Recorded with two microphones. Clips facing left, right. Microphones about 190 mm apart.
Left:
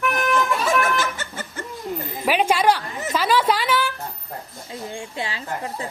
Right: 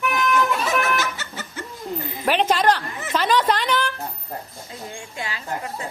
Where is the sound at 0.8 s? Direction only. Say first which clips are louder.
Left 1 dB; 50° left (ahead or behind).